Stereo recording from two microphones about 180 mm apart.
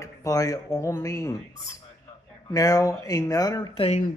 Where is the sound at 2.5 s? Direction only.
20° left (ahead or behind).